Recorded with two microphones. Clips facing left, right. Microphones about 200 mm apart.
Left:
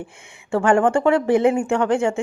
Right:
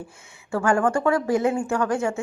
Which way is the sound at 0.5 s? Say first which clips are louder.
Left 4 dB; 30° left (ahead or behind).